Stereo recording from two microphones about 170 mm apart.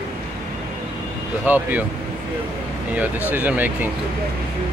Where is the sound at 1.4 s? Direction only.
10° right (ahead or behind).